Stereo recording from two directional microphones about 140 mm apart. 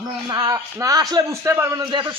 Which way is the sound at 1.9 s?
35° right (ahead or behind).